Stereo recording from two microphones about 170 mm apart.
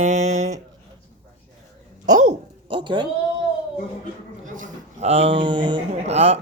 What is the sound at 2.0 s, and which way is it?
Speech, 45° right (ahead or behind).